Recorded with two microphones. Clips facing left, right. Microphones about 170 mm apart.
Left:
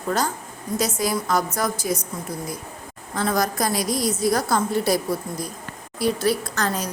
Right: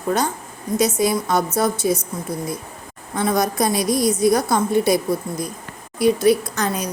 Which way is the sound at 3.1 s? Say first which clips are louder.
Right 3 dB; 20° right (ahead or behind).